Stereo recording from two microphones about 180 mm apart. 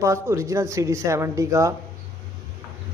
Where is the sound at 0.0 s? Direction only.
15° right (ahead or behind).